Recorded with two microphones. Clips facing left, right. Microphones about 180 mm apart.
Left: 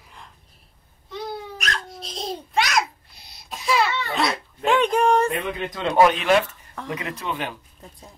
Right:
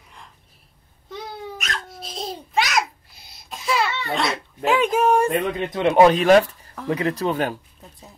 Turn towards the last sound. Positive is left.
turn(degrees=-40)  # may be behind; listen again after turning